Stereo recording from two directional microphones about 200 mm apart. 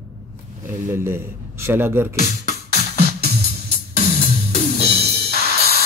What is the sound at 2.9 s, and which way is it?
Music, 50° right (ahead or behind).